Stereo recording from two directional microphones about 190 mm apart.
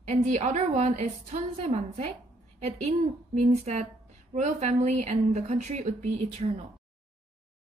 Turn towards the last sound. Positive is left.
turn(degrees=-35)  # may be behind; listen again after turning